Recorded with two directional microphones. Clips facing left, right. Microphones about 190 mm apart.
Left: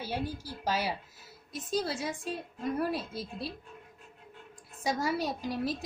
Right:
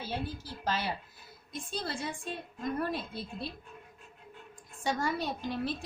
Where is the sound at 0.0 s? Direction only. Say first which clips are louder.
Left 2 dB; 10° left (ahead or behind).